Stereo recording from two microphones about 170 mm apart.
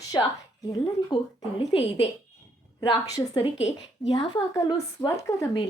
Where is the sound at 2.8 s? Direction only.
20° left (ahead or behind).